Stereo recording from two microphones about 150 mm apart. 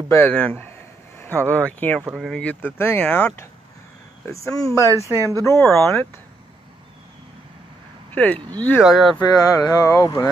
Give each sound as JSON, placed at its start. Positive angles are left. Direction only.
{"t": 0.1, "sound": "speech", "side_deg": 10}
{"t": 2.0, "sound": "speech", "side_deg": 0}
{"t": 4.8, "sound": "speech", "side_deg": -20}
{"t": 5.8, "sound": "speech", "side_deg": 15}
{"t": 8.1, "sound": "speech", "side_deg": 10}
{"t": 8.8, "sound": "speech", "side_deg": 0}
{"t": 9.2, "sound": "speech", "side_deg": 25}